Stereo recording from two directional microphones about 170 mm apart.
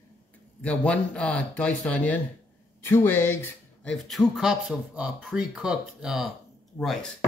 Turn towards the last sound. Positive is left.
turn(degrees=0)  # may be behind; listen again after turning